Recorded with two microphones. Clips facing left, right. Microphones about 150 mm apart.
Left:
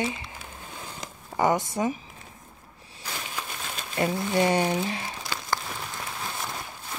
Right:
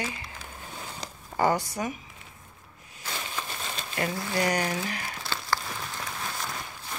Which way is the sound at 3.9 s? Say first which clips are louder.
Left 5 dB; 20° left (ahead or behind).